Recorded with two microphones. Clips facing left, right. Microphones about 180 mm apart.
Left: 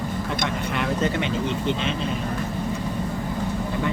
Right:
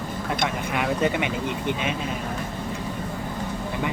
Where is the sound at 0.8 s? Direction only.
10° right (ahead or behind).